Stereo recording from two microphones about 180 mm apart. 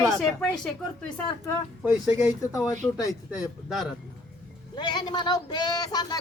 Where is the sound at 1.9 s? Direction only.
10° right (ahead or behind).